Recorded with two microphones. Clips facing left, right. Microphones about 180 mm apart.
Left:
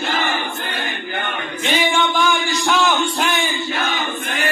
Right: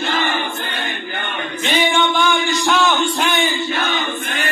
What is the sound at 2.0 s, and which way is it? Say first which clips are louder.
Music: right 1 dB; centre (ahead or behind).